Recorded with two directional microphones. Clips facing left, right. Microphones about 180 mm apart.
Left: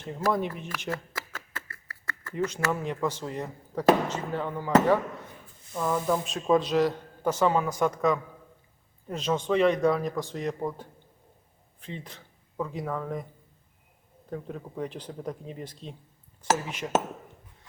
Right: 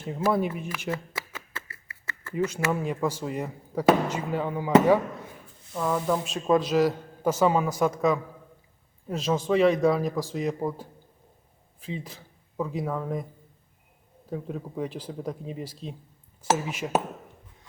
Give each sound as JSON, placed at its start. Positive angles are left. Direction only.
{"t": 0.0, "sound": "speech", "side_deg": -5}
{"t": 1.6, "sound": "a sound", "side_deg": -20}
{"t": 2.3, "sound": "speech", "side_deg": -5}
{"t": 5.7, "sound": "a man's voice", "side_deg": 0}
{"t": 14.3, "sound": "a man's voice", "side_deg": -5}